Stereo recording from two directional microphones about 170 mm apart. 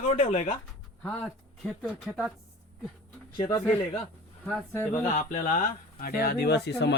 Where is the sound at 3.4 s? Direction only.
20° left (ahead or behind).